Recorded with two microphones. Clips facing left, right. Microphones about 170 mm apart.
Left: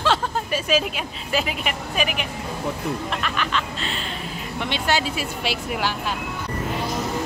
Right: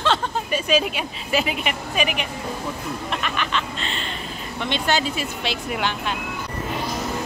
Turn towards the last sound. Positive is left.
turn(degrees=5)  # may be behind; listen again after turning